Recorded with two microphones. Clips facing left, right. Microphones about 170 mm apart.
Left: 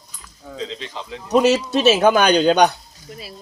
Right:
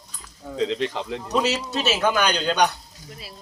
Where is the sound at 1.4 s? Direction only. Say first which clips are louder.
Left 9 dB; 60° left (ahead or behind).